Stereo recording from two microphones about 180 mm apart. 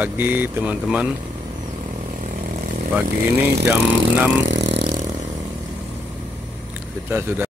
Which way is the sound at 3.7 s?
5° right (ahead or behind).